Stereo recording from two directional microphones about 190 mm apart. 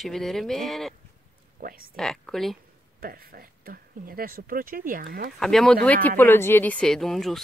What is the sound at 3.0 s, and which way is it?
Speech, 50° right (ahead or behind).